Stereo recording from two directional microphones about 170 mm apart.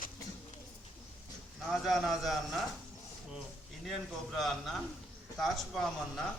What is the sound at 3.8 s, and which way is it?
A man's voice, centre (ahead or behind).